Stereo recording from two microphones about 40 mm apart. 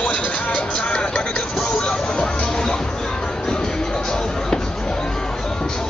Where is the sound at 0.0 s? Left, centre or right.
Left.